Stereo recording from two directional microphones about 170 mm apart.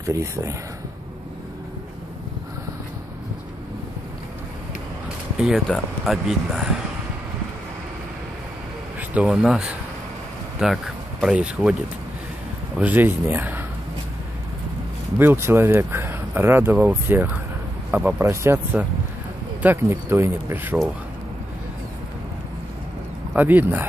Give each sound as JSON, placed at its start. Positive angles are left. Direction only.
{"t": 0.0, "sound": "speech", "side_deg": -20}
{"t": 5.4, "sound": "speech", "side_deg": 0}
{"t": 9.1, "sound": "speech", "side_deg": -5}
{"t": 12.7, "sound": "speech", "side_deg": -10}
{"t": 15.1, "sound": "speech", "side_deg": -15}
{"t": 23.3, "sound": "speech", "side_deg": -10}